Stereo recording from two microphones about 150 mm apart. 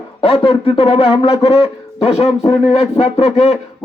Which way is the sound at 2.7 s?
45° left (ahead or behind).